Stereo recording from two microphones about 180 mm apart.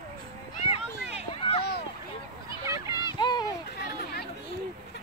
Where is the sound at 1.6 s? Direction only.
65° left (ahead or behind).